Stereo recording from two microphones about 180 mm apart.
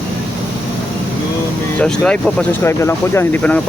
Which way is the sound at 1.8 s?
5° left (ahead or behind).